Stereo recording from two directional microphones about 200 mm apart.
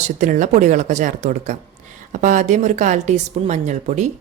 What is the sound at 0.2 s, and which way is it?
Speech, 40° right (ahead or behind).